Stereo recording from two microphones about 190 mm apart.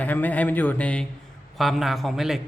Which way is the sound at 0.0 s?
10° left (ahead or behind).